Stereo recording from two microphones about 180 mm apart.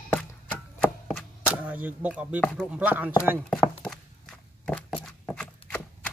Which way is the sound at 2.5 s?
5° right (ahead or behind).